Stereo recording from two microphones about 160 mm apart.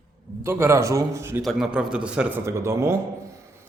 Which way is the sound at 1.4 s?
Centre (ahead or behind).